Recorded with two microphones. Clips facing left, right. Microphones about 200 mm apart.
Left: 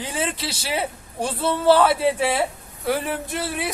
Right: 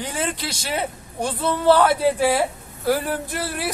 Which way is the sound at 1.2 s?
30° left (ahead or behind).